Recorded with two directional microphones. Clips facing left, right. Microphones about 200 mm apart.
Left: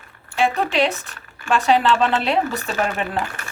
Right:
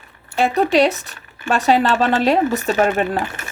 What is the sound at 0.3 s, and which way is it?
Speech, 40° right (ahead or behind).